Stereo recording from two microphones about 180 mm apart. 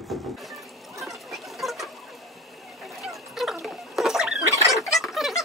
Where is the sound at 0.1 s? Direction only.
Centre (ahead or behind).